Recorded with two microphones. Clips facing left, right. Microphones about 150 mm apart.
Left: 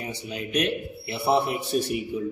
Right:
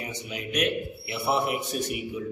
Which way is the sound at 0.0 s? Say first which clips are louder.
Left 2 dB; 30° left (ahead or behind).